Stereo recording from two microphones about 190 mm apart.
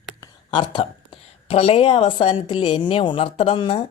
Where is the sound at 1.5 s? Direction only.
30° left (ahead or behind).